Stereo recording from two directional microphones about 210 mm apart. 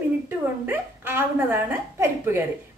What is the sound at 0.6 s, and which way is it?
A woman's voice, 10° right (ahead or behind).